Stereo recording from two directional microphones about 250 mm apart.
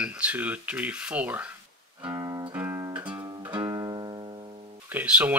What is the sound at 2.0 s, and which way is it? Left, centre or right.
Music, centre.